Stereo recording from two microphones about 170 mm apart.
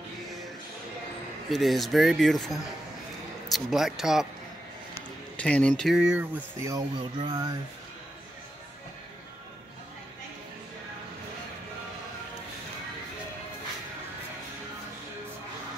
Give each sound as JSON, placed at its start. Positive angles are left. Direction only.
{"t": 1.5, "sound": "speech", "side_deg": 0}
{"t": 5.4, "sound": "speech", "side_deg": 10}
{"t": 5.9, "sound": "speech", "side_deg": -10}
{"t": 7.0, "sound": "a sound", "side_deg": -25}